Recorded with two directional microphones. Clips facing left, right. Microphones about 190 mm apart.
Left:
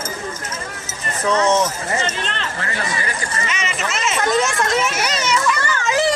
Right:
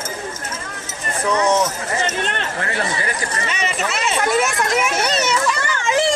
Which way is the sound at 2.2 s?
50° right (ahead or behind).